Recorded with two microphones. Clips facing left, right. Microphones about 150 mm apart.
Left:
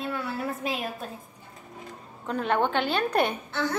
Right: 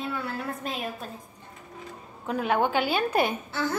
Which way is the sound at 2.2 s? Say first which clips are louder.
Even; 5° right (ahead or behind).